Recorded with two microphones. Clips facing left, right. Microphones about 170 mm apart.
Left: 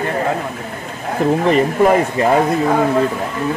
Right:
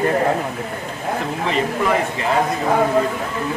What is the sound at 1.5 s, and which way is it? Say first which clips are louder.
Speech: left 5 dB; 50° left (ahead or behind).